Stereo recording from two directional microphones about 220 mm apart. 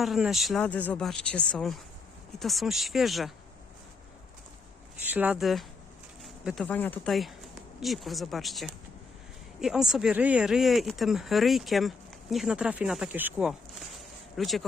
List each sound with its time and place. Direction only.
0.0 s speech: centre (ahead or behind)
5.0 s speech: 5° right (ahead or behind)